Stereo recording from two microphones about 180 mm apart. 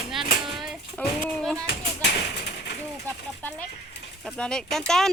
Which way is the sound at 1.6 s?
65° left (ahead or behind).